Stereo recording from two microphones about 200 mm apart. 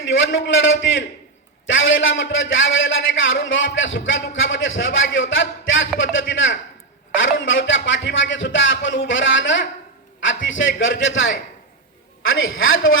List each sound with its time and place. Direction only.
0.1 s a man's voice: 70° left (ahead or behind)